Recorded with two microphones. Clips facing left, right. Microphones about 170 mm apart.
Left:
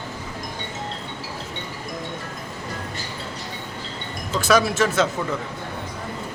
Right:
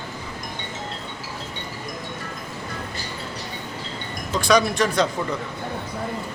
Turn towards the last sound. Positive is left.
turn(degrees=5)  # may be behind; listen again after turning